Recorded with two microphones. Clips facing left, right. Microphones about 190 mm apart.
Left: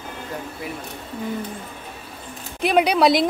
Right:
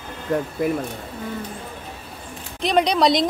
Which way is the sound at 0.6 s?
50° right (ahead or behind).